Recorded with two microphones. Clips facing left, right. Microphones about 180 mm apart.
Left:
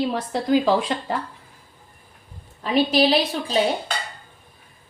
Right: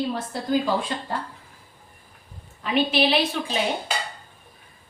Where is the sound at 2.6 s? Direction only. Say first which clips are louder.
Left 3 dB; 35° left (ahead or behind).